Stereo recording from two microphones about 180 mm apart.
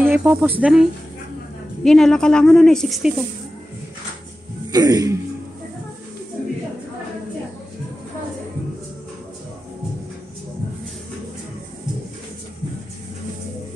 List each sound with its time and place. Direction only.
0.0 s a woman's voice: 10° right (ahead or behind)
4.7 s speech: 20° right (ahead or behind)